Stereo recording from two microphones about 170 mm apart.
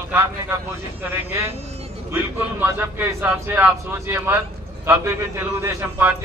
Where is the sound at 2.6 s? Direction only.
15° right (ahead or behind).